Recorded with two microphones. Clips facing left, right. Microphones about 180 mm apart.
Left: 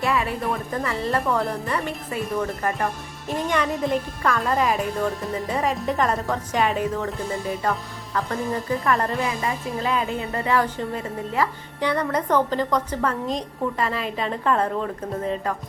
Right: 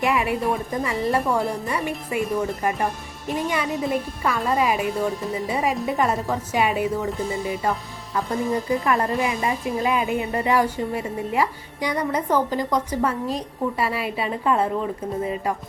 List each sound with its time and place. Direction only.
0.0 s a woman's voice: 15° right (ahead or behind)
8.9 s a woman's voice: 20° right (ahead or behind)